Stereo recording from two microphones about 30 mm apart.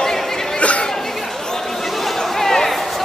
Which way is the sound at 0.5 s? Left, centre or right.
Left.